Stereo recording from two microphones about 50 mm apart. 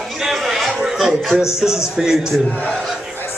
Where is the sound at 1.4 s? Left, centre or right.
Centre.